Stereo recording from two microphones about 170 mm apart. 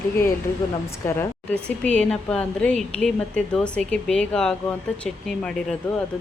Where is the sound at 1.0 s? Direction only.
10° left (ahead or behind).